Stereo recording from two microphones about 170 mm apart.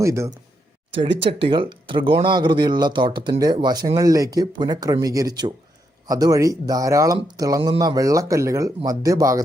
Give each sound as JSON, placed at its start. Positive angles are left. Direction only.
{"t": 0.0, "sound": "speech", "side_deg": -15}
{"t": 1.2, "sound": "speech", "side_deg": -30}